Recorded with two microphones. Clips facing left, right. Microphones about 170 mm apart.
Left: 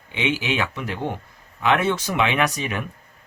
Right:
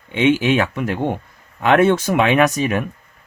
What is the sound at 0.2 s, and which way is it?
Speech, 50° right (ahead or behind).